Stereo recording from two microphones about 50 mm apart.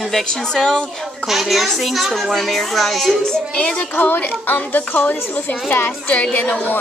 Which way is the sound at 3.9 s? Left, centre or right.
Left.